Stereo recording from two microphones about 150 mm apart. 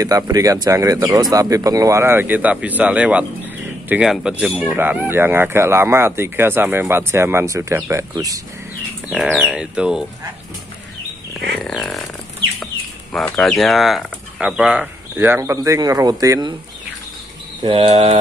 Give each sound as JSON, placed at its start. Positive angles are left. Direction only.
{"t": 0.0, "sound": "speech", "side_deg": -25}
{"t": 9.1, "sound": "speech", "side_deg": -5}
{"t": 11.3, "sound": "speech", "side_deg": 5}
{"t": 13.1, "sound": "speech", "side_deg": 5}
{"t": 17.6, "sound": "speech", "side_deg": -35}